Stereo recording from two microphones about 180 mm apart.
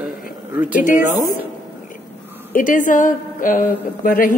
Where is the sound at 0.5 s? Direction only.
10° right (ahead or behind).